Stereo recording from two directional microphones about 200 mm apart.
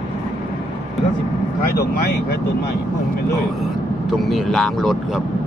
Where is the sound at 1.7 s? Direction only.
50° left (ahead or behind).